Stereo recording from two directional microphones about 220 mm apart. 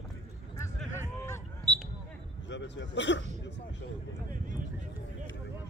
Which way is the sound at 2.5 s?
55° left (ahead or behind).